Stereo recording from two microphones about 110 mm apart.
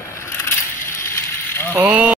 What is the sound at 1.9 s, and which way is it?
Speech, 10° right (ahead or behind).